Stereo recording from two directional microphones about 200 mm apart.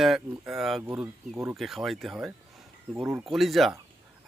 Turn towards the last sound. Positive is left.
turn(degrees=0)  # may be behind; listen again after turning